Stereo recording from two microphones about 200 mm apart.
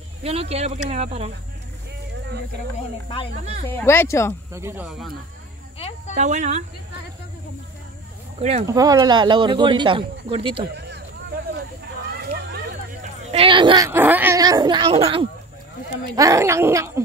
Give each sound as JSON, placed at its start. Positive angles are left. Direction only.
{"t": 0.2, "sound": "speech", "side_deg": -30}
{"t": 3.6, "sound": "speech", "side_deg": 10}
{"t": 4.5, "sound": "speech", "side_deg": -15}
{"t": 4.8, "sound": "speech", "side_deg": 0}
{"t": 5.8, "sound": "cricket", "side_deg": 30}
{"t": 6.1, "sound": "speech", "side_deg": -35}
{"t": 8.4, "sound": "speech", "side_deg": -30}
{"t": 8.6, "sound": "speech", "side_deg": -20}
{"t": 10.6, "sound": "speech", "side_deg": -55}
{"t": 13.3, "sound": "speech", "side_deg": -25}
{"t": 13.8, "sound": "speech", "side_deg": -10}
{"t": 16.2, "sound": "speech", "side_deg": -15}